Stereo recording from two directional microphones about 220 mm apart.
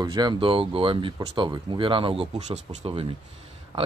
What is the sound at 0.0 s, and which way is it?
Speech, 20° right (ahead or behind).